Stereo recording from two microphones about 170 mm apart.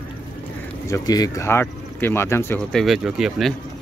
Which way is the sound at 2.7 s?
Centre (ahead or behind).